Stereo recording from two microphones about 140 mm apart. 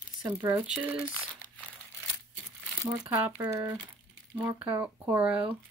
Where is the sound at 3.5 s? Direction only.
20° right (ahead or behind).